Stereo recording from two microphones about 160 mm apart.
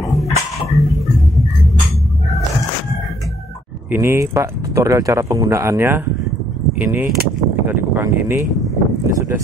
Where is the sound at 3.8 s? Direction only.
15° right (ahead or behind).